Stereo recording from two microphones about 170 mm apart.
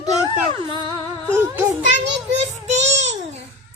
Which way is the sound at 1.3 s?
15° right (ahead or behind).